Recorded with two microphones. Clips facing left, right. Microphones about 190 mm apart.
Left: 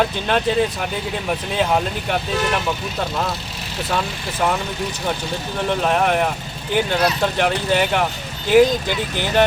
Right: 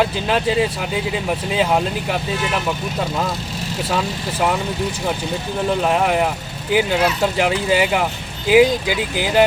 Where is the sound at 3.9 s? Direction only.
5° right (ahead or behind).